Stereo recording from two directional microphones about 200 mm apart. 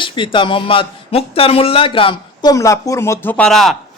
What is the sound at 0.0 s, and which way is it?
Speech, 25° left (ahead or behind).